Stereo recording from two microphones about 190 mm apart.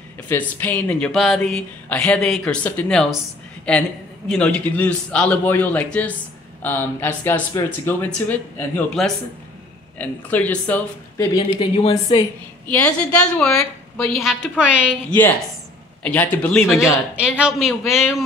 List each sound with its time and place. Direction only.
0.3 s a woman's voice: 10° left (ahead or behind)
11.3 s a woman's voice: 30° left (ahead or behind)
12.6 s a woman's voice: 10° left (ahead or behind)
15.0 s speech: 10° left (ahead or behind)
17.1 s a woman's voice: 5° right (ahead or behind)